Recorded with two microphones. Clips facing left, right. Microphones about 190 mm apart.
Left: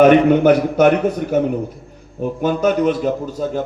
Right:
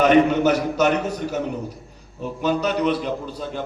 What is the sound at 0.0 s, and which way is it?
A man's voice, 55° left (ahead or behind).